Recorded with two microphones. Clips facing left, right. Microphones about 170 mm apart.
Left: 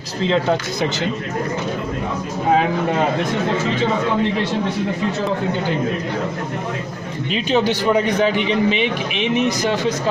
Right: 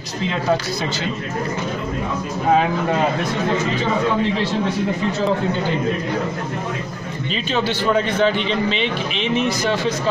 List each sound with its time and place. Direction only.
0.3 s speech: 20° left (ahead or behind)
7.4 s a man's voice: 15° left (ahead or behind)